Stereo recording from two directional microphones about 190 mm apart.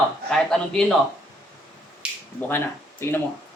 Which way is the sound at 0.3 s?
5° left (ahead or behind).